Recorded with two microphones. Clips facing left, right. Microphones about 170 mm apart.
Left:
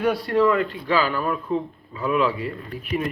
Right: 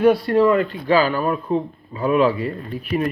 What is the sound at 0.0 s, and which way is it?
A man's voice, 30° right (ahead or behind).